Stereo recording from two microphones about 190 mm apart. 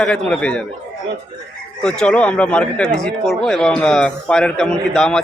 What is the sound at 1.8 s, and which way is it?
Speech, 5° left (ahead or behind).